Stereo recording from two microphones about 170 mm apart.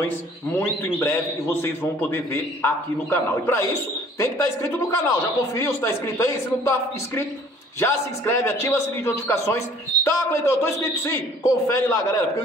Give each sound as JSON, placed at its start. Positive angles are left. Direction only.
{"t": 0.9, "sound": "a man's voice", "side_deg": 15}